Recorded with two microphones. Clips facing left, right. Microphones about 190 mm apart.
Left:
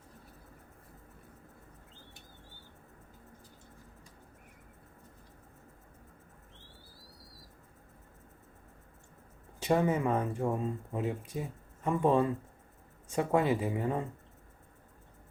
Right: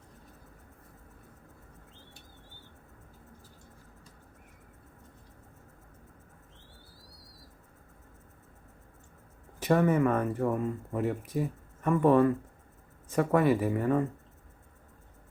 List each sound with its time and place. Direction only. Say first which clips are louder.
9.7 s speech: right 4 dB; 20° left (ahead or behind)